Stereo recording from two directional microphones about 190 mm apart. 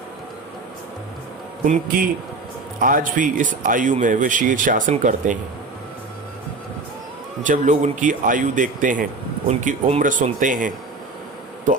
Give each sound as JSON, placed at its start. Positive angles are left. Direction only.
{"t": 1.6, "sound": "speech", "side_deg": -45}
{"t": 7.4, "sound": "speech", "side_deg": -40}